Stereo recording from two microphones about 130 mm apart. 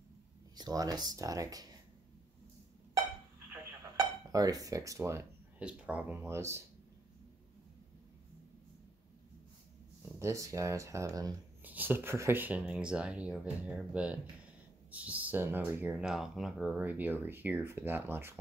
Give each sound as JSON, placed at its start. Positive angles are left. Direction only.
{"t": 0.6, "sound": "speech", "side_deg": -30}
{"t": 4.3, "sound": "speech", "side_deg": -30}
{"t": 5.6, "sound": "speech", "side_deg": -10}
{"t": 6.1, "sound": "speech", "side_deg": -20}
{"t": 10.0, "sound": "speech", "side_deg": -20}
{"t": 11.6, "sound": "speech", "side_deg": -15}
{"t": 16.7, "sound": "speech", "side_deg": -15}